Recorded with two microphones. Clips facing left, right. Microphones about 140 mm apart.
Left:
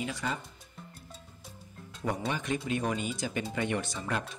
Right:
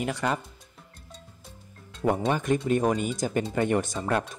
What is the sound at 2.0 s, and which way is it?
Speech, 50° right (ahead or behind).